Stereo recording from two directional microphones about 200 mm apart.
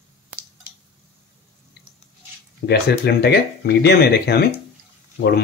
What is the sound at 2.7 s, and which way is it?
Speech, 55° left (ahead or behind).